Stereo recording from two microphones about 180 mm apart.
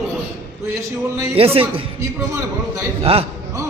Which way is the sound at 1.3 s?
30° right (ahead or behind).